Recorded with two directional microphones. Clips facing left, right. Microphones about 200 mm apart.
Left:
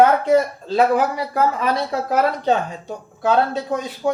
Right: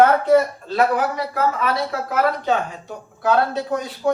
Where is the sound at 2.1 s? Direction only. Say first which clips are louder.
Left 2 dB; 35° left (ahead or behind).